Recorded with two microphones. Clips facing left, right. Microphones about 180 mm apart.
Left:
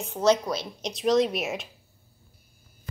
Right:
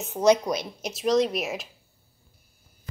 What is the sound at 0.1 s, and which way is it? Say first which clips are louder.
Speech: right 2 dB; 15° right (ahead or behind).